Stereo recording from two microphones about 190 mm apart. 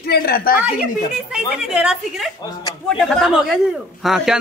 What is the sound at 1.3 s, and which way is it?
A man's voice, 5° right (ahead or behind).